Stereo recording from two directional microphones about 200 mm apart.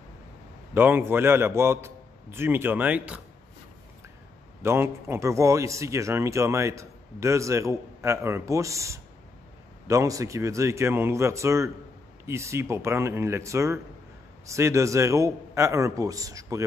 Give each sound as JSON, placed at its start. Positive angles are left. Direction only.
{"t": 0.7, "sound": "speech", "side_deg": -10}
{"t": 4.6, "sound": "speech", "side_deg": -10}